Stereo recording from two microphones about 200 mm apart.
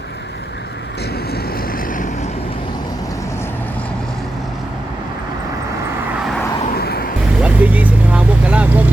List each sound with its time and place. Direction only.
1.3 s vehicle: 45° left (ahead or behind)
6.7 s a sound: 50° left (ahead or behind)
7.4 s vehicle: 5° right (ahead or behind)